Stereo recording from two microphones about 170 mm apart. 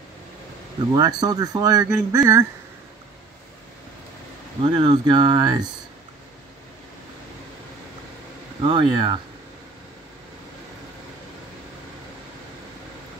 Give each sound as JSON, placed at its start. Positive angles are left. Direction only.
{"t": 0.9, "sound": "speech", "side_deg": -25}
{"t": 4.6, "sound": "speech", "side_deg": -25}
{"t": 8.6, "sound": "speech", "side_deg": -25}